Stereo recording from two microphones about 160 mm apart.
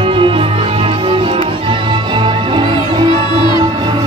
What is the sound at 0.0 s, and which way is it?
Music, 35° right (ahead or behind).